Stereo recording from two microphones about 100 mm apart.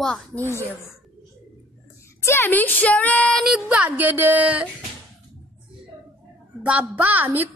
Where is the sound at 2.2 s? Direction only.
25° left (ahead or behind).